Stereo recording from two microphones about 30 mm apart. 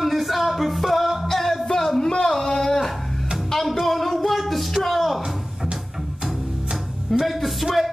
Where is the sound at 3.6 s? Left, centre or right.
Centre.